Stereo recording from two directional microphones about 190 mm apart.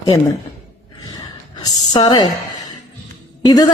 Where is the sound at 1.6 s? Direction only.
20° left (ahead or behind).